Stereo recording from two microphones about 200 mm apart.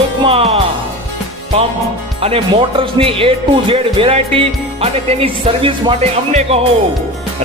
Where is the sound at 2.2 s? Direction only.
30° right (ahead or behind).